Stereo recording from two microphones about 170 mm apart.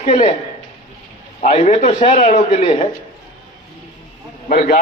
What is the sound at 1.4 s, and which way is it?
A man's voice, 40° left (ahead or behind).